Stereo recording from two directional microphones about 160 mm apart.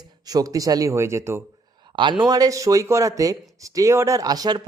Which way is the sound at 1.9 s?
30° right (ahead or behind).